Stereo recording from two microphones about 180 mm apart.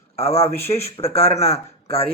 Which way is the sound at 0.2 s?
35° left (ahead or behind).